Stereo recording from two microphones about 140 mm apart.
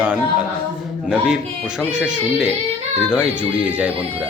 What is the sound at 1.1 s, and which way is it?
Speech, 5° right (ahead or behind).